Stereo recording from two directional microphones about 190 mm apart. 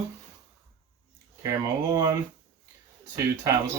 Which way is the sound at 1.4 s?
20° right (ahead or behind).